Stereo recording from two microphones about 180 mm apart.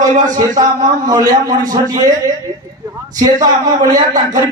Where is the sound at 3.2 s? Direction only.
20° right (ahead or behind).